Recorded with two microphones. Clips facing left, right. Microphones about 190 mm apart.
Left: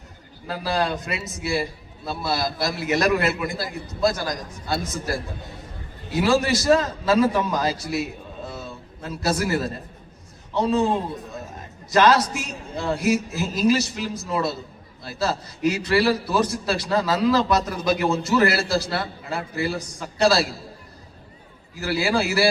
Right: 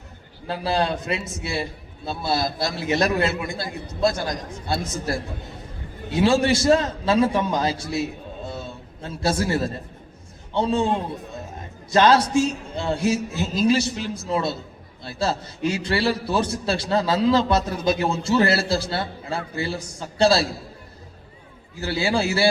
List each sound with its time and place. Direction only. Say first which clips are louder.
0.4 s a man's voice: right 1 dB; 25° right (ahead or behind)
11.9 s a man's voice: right 1 dB; 25° right (ahead or behind)
21.8 s a man's voice: even; 25° right (ahead or behind)